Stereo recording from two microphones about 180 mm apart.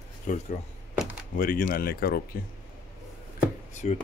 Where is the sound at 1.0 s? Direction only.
5° right (ahead or behind).